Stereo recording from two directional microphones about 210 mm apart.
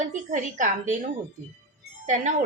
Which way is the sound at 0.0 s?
35° right (ahead or behind).